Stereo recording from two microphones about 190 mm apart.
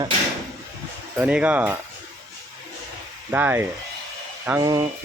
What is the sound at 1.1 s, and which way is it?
Speech, 5° right (ahead or behind).